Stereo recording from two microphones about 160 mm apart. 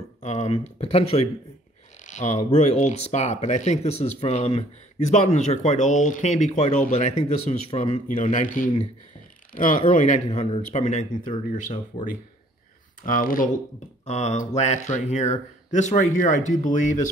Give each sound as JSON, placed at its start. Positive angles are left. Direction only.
{"t": 0.2, "sound": "speech", "side_deg": 45}
{"t": 9.8, "sound": "speech", "side_deg": 45}
{"t": 13.0, "sound": "speech", "side_deg": 60}
{"t": 14.0, "sound": "speech", "side_deg": 45}